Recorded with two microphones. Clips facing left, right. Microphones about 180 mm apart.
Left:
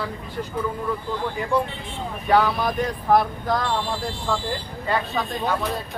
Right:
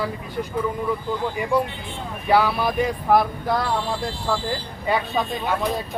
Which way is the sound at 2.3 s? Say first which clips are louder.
Right 1 dB; 10° right (ahead or behind).